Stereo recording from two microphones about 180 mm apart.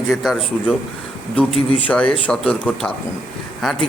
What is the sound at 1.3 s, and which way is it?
A man's voice, 5° left (ahead or behind).